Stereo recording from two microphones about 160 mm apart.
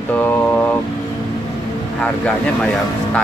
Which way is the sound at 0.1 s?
10° left (ahead or behind).